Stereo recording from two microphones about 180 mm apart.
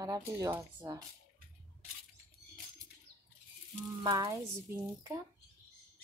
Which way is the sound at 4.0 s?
20° right (ahead or behind).